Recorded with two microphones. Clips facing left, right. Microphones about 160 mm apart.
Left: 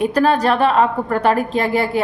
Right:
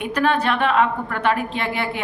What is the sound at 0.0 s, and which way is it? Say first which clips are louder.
A woman's voice: left 5 dB; 35° left (ahead or behind).